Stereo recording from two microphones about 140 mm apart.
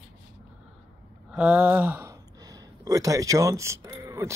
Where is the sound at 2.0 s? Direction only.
25° right (ahead or behind).